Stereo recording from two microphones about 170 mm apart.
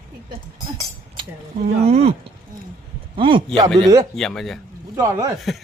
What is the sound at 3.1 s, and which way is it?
Speech, 30° right (ahead or behind).